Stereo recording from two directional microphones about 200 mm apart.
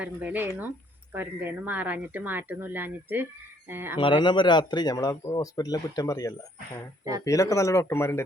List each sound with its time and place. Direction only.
0.0 s a woman's voice: 10° right (ahead or behind)
4.0 s speech: 25° left (ahead or behind)